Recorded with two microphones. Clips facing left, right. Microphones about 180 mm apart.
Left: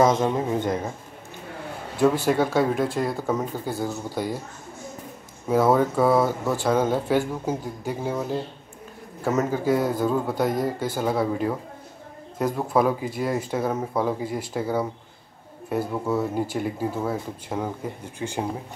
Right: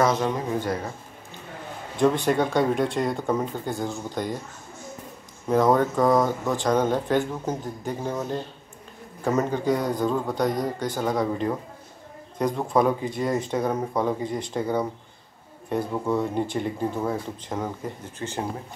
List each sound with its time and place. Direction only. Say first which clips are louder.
0.0 s speech: left 3 dB; 20° left (ahead or behind)
2.0 s speech: left 1 dB; 5° left (ahead or behind)
5.5 s speech: even; 5° left (ahead or behind)